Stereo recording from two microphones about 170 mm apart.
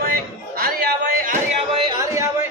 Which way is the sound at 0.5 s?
60° right (ahead or behind).